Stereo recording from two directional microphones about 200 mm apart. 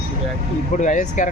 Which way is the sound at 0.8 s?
40° left (ahead or behind).